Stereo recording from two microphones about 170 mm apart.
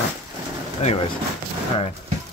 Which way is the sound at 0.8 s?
45° left (ahead or behind).